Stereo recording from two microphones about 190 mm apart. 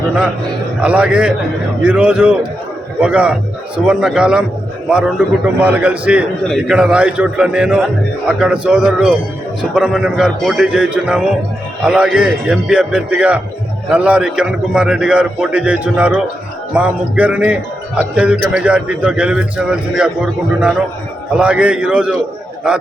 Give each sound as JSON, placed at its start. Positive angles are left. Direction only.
{"t": 0.8, "sound": "a man's voice", "side_deg": -5}